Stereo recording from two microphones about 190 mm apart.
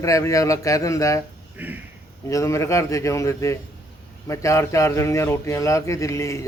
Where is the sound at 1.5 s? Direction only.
10° right (ahead or behind).